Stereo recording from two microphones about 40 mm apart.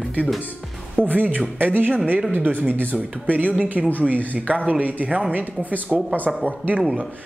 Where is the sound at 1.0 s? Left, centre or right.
Right.